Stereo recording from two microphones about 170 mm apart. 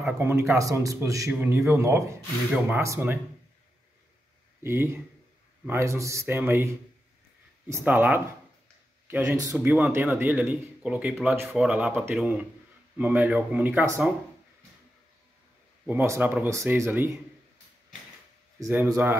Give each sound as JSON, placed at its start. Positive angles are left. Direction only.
{"t": 0.0, "sound": "a man's voice", "side_deg": -10}
{"t": 4.6, "sound": "a man's voice", "side_deg": -15}
{"t": 15.9, "sound": "a man's voice", "side_deg": -10}
{"t": 18.6, "sound": "a man's voice", "side_deg": -15}